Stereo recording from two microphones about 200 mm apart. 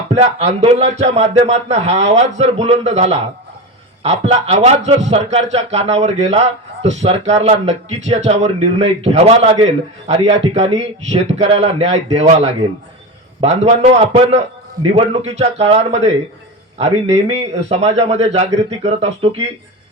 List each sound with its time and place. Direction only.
0.1 s a man's voice: 35° right (ahead or behind)